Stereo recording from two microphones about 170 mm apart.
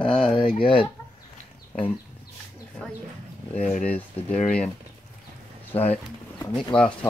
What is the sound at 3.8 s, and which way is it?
Speech, 10° left (ahead or behind).